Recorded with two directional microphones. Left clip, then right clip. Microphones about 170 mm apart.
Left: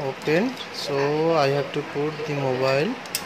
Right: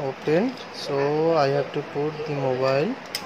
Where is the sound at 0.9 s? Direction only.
Centre (ahead or behind).